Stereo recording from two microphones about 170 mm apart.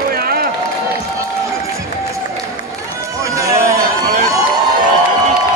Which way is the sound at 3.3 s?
20° right (ahead or behind).